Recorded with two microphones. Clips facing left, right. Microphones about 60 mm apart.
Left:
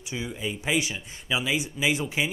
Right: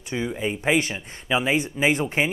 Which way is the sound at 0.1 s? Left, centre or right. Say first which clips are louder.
Right 6 dB; right.